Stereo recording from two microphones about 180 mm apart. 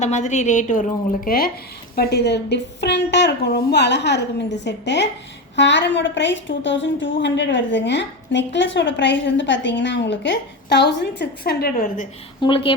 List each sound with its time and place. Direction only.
0.0 s a woman's voice: 40° left (ahead or behind)
2.0 s a woman's voice: 65° left (ahead or behind)
12.4 s speech: 30° left (ahead or behind)